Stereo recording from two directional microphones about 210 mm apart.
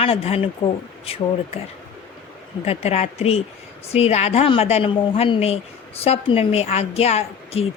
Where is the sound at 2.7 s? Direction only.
30° left (ahead or behind).